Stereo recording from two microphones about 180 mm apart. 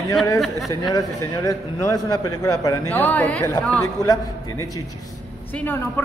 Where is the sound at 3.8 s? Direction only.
20° left (ahead or behind).